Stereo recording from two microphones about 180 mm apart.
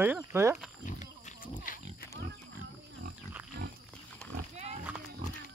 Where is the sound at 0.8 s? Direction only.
45° left (ahead or behind).